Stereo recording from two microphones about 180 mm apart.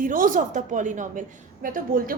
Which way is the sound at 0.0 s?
50° right (ahead or behind).